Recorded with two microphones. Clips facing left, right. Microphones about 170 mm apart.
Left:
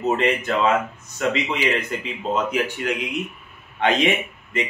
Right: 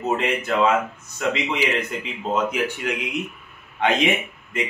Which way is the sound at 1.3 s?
10° right (ahead or behind).